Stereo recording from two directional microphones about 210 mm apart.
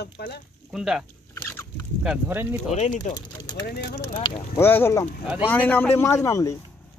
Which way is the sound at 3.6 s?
50° left (ahead or behind).